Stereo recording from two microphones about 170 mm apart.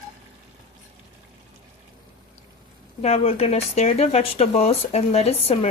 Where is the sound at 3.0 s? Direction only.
35° left (ahead or behind).